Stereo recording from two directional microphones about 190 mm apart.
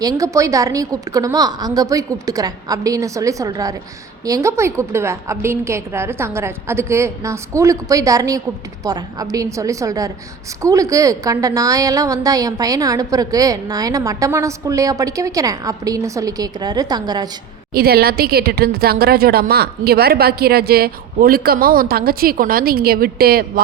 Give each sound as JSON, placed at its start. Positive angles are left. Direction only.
{"t": 0.0, "sound": "a woman's voice", "side_deg": -20}
{"t": 17.7, "sound": "a woman's voice", "side_deg": -55}